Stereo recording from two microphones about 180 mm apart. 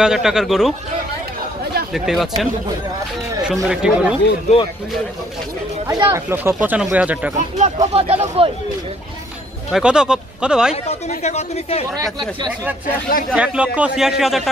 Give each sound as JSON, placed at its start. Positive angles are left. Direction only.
{"t": 0.0, "sound": "speech", "side_deg": -5}
{"t": 2.0, "sound": "speech", "side_deg": 0}
{"t": 3.6, "sound": "speech", "side_deg": -5}
{"t": 5.9, "sound": "speech", "side_deg": -20}
{"t": 6.3, "sound": "speech", "side_deg": -10}
{"t": 7.5, "sound": "speech", "side_deg": -40}
{"t": 9.7, "sound": "speech", "side_deg": -5}
{"t": 10.7, "sound": "speech", "side_deg": 40}
{"t": 12.0, "sound": "speech", "side_deg": -25}
{"t": 13.3, "sound": "speech", "side_deg": -5}